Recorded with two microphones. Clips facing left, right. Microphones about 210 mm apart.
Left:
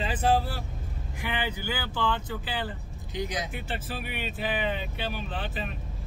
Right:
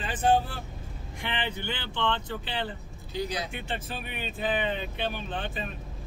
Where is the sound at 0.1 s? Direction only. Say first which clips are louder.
Right 2 dB; 5° left (ahead or behind).